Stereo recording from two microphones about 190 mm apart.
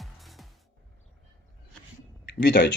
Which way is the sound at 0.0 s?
Centre (ahead or behind).